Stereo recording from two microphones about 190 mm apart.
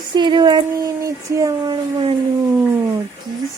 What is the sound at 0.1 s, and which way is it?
Speech, 25° right (ahead or behind).